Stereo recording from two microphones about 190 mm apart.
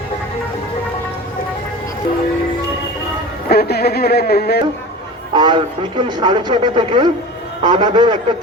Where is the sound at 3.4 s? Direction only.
55° left (ahead or behind).